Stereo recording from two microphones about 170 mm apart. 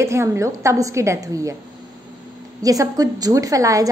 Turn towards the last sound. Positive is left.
turn(degrees=-20)  # may be behind; listen again after turning